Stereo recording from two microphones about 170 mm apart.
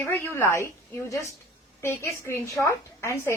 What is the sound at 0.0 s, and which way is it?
A woman's voice, 15° left (ahead or behind).